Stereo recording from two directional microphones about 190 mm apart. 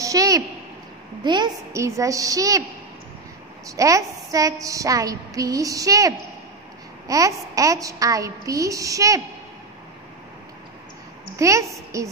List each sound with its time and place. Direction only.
0.0 s a sound: 20° right (ahead or behind)
1.2 s a woman's voice: 25° right (ahead or behind)
3.6 s a woman's voice: 15° right (ahead or behind)
11.3 s a woman's voice: 15° right (ahead or behind)